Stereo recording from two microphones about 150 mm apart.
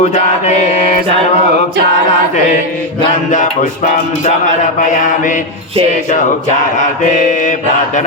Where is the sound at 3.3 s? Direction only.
55° left (ahead or behind).